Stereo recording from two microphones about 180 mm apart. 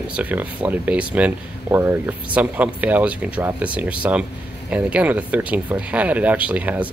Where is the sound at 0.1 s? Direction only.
10° right (ahead or behind).